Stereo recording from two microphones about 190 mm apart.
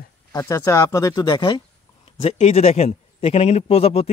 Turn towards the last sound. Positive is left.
turn(degrees=35)  # may be behind; listen again after turning